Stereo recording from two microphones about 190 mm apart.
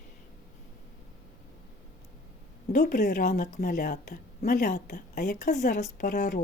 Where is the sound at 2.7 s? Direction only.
45° left (ahead or behind).